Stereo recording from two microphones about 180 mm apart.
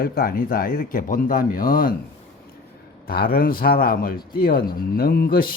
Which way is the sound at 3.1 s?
55° left (ahead or behind).